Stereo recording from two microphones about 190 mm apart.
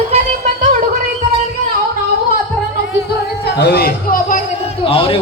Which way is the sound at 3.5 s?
60° left (ahead or behind).